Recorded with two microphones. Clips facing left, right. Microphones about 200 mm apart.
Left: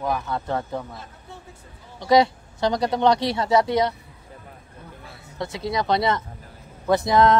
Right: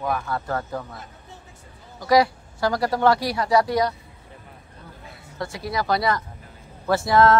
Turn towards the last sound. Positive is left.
turn(degrees=20)  # may be behind; listen again after turning